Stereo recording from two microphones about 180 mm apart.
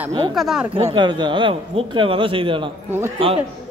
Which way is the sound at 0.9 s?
25° right (ahead or behind).